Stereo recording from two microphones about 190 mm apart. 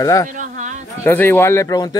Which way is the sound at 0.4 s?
40° right (ahead or behind).